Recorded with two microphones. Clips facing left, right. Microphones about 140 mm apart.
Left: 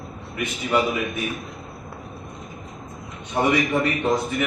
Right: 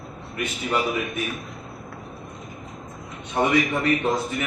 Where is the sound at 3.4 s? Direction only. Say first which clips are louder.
Left 1 dB; 5° left (ahead or behind).